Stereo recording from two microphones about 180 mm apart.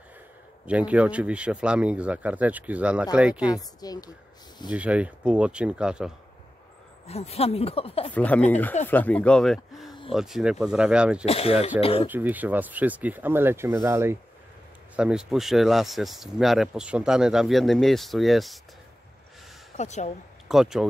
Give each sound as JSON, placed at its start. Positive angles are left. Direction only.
{"t": 0.7, "sound": "speech", "side_deg": -5}
{"t": 3.8, "sound": "speech", "side_deg": 20}
{"t": 4.6, "sound": "speech", "side_deg": -5}
{"t": 7.1, "sound": "speech", "side_deg": 35}
{"t": 8.1, "sound": "speech", "side_deg": 10}
{"t": 11.2, "sound": "speech", "side_deg": 35}
{"t": 12.1, "sound": "speech", "side_deg": -10}
{"t": 15.0, "sound": "speech", "side_deg": -5}
{"t": 19.8, "sound": "speech", "side_deg": 40}
{"t": 20.4, "sound": "speech", "side_deg": 0}